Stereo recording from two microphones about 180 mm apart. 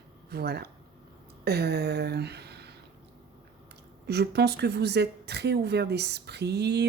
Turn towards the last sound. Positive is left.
turn(degrees=-70)  # may be behind; listen again after turning